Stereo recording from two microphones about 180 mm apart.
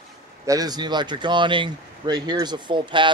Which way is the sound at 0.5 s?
20° right (ahead or behind).